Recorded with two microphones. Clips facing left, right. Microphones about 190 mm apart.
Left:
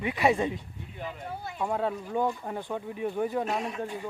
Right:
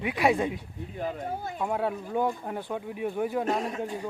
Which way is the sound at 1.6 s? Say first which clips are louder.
Left 1 dB; 5° right (ahead or behind).